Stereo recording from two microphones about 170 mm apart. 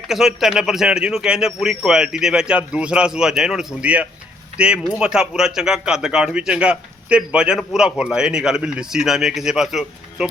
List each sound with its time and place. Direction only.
0.1 s a man's voice: centre (ahead or behind)